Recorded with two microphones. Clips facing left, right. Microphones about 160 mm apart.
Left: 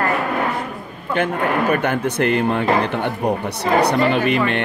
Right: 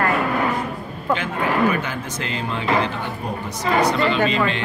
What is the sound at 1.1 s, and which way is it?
Speech, 55° left (ahead or behind).